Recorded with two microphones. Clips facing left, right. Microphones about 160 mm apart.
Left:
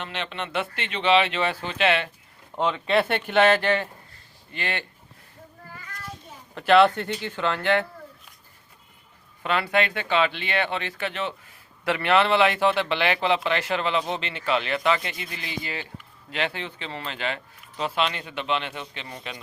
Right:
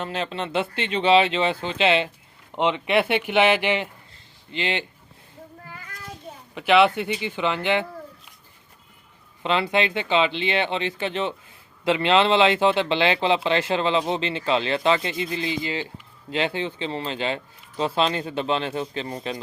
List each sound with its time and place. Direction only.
0.0 s speech: 35° right (ahead or behind)
6.5 s speech: 5° right (ahead or behind)
9.4 s speech: 20° right (ahead or behind)